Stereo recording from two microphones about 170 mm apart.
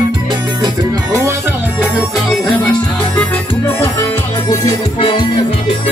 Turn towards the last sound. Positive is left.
turn(degrees=30)  # may be behind; listen again after turning